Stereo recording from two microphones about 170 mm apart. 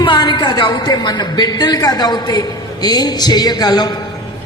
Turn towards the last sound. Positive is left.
turn(degrees=25)  # may be behind; listen again after turning